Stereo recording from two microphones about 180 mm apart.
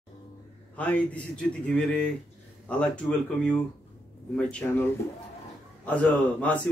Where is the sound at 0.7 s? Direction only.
5° left (ahead or behind).